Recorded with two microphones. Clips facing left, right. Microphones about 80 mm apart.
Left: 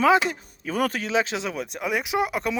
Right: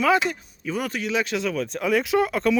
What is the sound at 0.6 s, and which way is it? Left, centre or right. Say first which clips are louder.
Speech: left 2 dB; left.